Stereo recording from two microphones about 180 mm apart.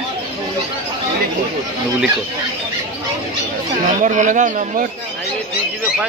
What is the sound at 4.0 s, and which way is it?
Speech, 45° right (ahead or behind).